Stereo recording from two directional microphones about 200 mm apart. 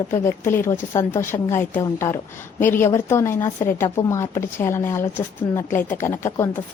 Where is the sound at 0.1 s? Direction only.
10° left (ahead or behind).